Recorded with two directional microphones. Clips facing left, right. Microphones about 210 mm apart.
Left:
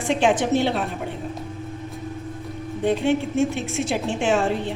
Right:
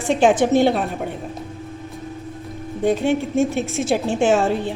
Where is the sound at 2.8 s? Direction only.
45° right (ahead or behind).